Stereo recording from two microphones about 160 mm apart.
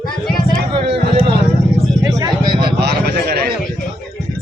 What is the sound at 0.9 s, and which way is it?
Speech, 35° right (ahead or behind).